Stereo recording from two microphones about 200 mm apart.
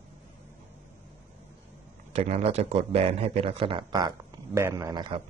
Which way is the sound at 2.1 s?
30° right (ahead or behind).